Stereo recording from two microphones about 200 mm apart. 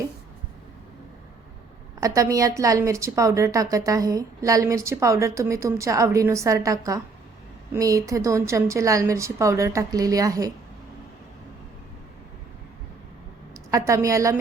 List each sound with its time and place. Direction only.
2.0 s a woman's voice: 15° right (ahead or behind)
13.7 s a woman's voice: 15° right (ahead or behind)